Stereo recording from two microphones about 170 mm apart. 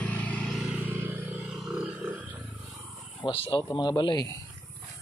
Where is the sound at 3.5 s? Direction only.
25° left (ahead or behind).